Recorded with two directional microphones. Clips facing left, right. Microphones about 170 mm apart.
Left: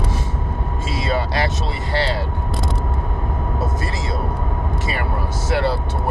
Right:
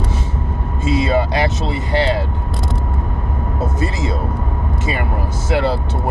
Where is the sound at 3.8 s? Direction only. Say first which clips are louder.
Right 5 dB; 20° right (ahead or behind).